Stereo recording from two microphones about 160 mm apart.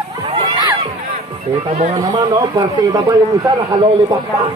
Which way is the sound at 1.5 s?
25° right (ahead or behind).